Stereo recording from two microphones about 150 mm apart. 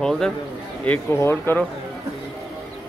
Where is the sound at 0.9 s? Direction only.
15° left (ahead or behind).